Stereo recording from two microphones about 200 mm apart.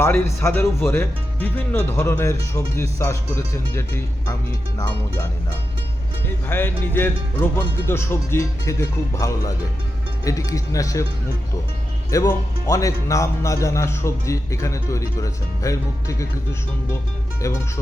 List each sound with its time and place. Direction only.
0.0 s speech: 15° left (ahead or behind)
6.5 s speech: 10° left (ahead or behind)
12.1 s speech: 15° left (ahead or behind)